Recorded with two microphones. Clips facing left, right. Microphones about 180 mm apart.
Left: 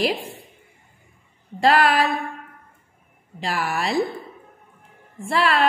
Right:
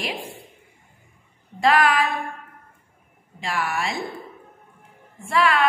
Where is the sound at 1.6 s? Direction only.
35° left (ahead or behind).